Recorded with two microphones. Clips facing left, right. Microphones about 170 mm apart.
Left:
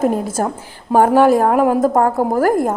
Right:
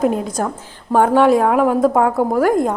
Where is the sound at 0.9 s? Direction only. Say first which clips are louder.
Left 1 dB; 5° left (ahead or behind).